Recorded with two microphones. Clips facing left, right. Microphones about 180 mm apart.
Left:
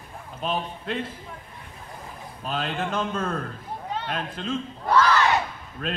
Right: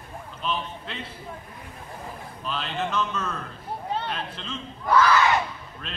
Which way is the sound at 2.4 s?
45° left (ahead or behind).